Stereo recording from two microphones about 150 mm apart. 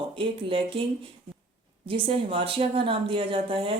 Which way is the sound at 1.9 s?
35° right (ahead or behind).